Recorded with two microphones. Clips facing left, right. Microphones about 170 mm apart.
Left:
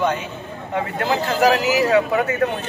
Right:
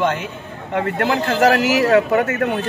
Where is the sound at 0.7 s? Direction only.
65° right (ahead or behind); by 2.4 s 50° right (ahead or behind).